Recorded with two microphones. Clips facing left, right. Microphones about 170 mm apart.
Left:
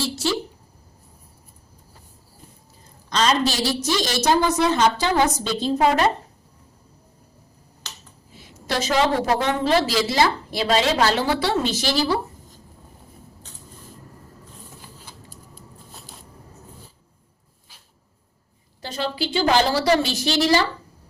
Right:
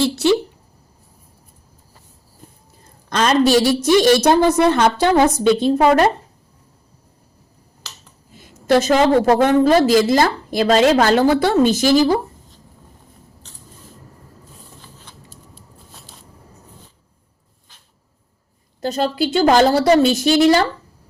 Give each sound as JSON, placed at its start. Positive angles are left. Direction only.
{"t": 3.1, "sound": "a sound", "side_deg": -55}
{"t": 3.8, "sound": "a woman's voice", "side_deg": -55}
{"t": 8.3, "sound": "a woman's voice", "side_deg": -50}
{"t": 18.8, "sound": "a woman's voice", "side_deg": -45}